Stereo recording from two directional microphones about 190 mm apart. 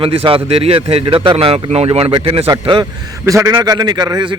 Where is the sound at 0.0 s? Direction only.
30° right (ahead or behind).